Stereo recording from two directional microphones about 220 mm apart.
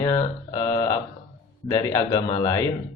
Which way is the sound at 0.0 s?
20° left (ahead or behind).